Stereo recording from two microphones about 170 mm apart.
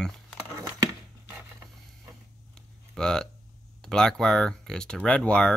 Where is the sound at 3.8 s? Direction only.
5° left (ahead or behind).